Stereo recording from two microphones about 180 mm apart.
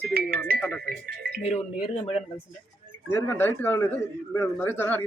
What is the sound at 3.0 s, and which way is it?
A man's voice, 15° left (ahead or behind).